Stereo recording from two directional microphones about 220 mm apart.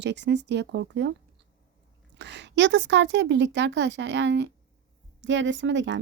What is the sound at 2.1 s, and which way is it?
A woman's voice, 55° right (ahead or behind).